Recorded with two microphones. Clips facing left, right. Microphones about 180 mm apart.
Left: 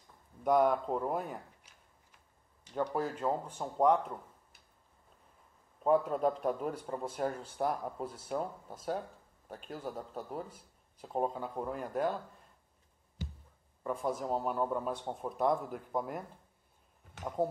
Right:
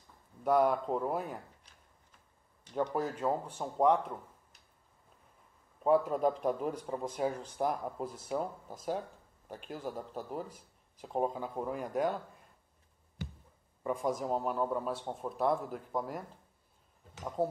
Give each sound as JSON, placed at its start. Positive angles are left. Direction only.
{"t": 0.4, "sound": "a man's voice", "side_deg": 0}
{"t": 3.0, "sound": "a man's voice", "side_deg": -5}
{"t": 5.9, "sound": "a man's voice", "side_deg": -5}
{"t": 13.2, "sound": "a sound", "side_deg": -55}
{"t": 13.8, "sound": "a man's voice", "side_deg": 0}
{"t": 17.4, "sound": "speech", "side_deg": -5}